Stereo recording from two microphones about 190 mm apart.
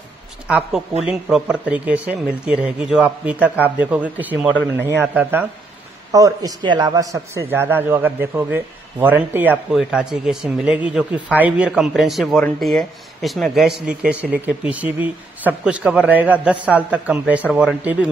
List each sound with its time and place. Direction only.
0.5 s a man's voice: 5° right (ahead or behind)